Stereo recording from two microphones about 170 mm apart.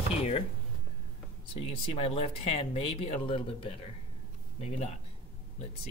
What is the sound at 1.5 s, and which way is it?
Speech, 35° left (ahead or behind).